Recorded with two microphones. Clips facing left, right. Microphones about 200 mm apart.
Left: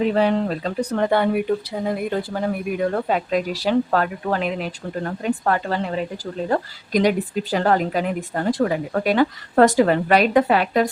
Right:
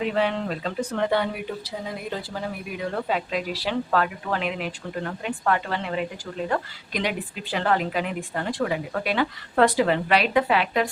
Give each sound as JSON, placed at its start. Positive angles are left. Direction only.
{"t": 0.0, "sound": "speech", "side_deg": 40}